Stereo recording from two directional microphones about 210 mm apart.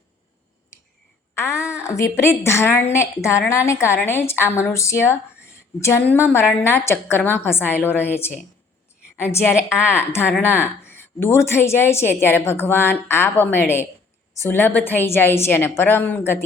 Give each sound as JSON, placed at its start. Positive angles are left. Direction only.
{"t": 1.4, "sound": "a woman's voice", "side_deg": 15}